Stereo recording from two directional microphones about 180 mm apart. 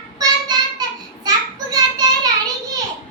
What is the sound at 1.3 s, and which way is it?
Child singing, 20° right (ahead or behind).